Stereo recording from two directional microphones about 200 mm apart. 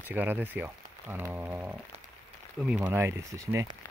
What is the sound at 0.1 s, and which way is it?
Speech, 10° right (ahead or behind).